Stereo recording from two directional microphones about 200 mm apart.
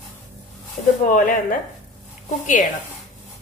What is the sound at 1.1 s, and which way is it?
Speech, 45° left (ahead or behind).